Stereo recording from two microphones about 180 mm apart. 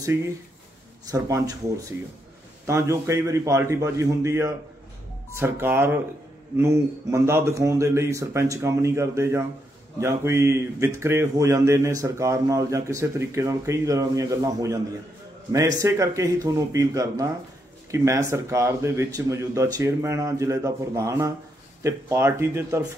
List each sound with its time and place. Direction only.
1.0 s speech: 20° right (ahead or behind)
2.6 s speech: 15° right (ahead or behind)